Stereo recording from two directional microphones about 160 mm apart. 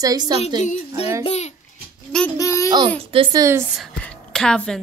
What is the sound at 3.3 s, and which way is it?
Speech, 20° right (ahead or behind).